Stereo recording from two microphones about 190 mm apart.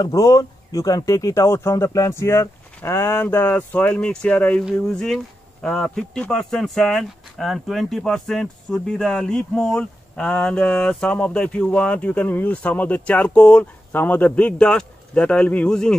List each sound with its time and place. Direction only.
0.0 s speech: 15° left (ahead or behind)